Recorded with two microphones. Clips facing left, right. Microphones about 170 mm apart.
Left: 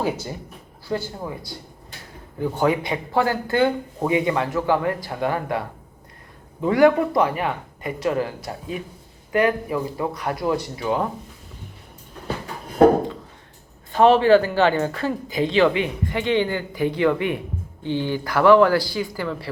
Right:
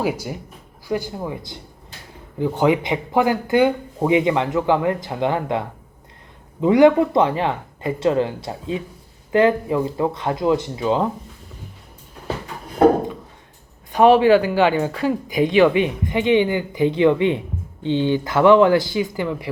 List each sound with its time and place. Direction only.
0.0 s speech: 10° right (ahead or behind)
13.9 s speech: 15° right (ahead or behind)